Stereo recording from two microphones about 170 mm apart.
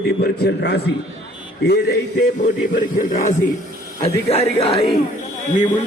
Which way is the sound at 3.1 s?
50° left (ahead or behind).